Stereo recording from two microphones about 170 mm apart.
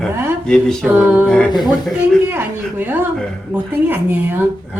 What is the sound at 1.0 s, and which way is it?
A woman's voice, 10° right (ahead or behind).